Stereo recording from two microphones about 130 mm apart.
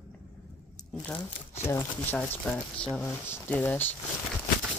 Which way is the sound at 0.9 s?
15° left (ahead or behind).